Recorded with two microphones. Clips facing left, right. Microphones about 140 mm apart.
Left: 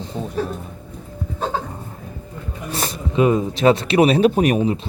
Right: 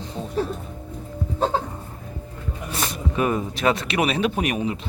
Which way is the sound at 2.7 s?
35° left (ahead or behind).